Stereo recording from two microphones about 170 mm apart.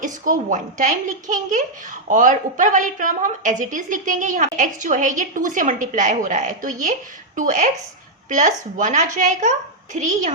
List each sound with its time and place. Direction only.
0.0 s a woman's voice: 50° right (ahead or behind)